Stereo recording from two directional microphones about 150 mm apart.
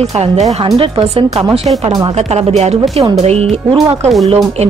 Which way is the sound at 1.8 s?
25° right (ahead or behind).